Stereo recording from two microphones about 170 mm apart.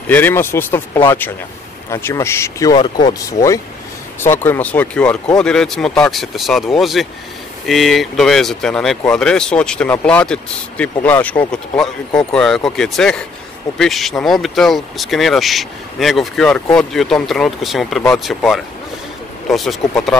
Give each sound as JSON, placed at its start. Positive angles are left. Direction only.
{"t": 0.1, "sound": "speech", "side_deg": 15}